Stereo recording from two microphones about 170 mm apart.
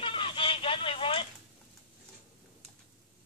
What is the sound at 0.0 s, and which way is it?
Vehicle, 30° left (ahead or behind).